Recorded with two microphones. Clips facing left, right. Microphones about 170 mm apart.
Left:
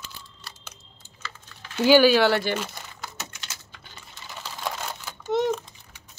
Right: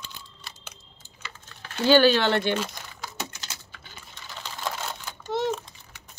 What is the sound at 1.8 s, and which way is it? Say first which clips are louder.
Speech: left 2 dB; 10° left (ahead or behind).